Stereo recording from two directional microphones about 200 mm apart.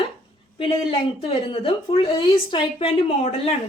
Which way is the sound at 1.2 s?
30° left (ahead or behind).